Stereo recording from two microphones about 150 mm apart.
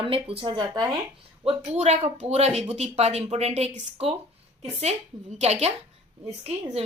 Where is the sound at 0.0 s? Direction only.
40° right (ahead or behind).